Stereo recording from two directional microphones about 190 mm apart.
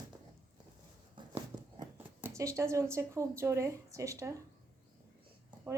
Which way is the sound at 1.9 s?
15° right (ahead or behind).